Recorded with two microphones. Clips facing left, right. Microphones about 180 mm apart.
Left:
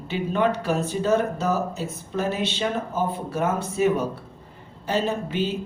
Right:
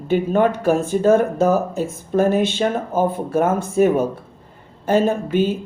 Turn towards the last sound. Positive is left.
turn(degrees=-50)  # may be behind; listen again after turning